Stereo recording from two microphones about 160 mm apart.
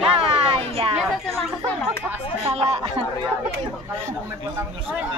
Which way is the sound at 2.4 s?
40° right (ahead or behind).